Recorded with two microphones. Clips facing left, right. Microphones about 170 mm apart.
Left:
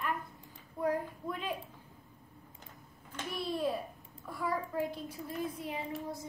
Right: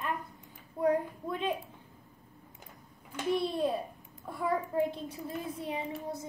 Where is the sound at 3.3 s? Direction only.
25° right (ahead or behind).